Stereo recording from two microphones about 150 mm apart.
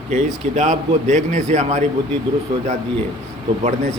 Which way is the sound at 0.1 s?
50° right (ahead or behind).